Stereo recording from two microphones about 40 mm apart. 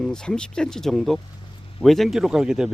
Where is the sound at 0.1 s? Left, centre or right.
Centre.